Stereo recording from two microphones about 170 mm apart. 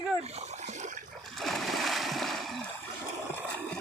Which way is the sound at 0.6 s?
45° right (ahead or behind).